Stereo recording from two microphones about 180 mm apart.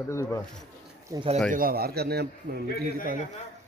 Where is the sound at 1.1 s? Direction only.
15° right (ahead or behind).